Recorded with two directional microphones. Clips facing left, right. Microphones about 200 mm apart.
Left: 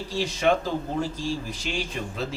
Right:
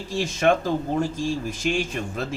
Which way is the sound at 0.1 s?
50° right (ahead or behind).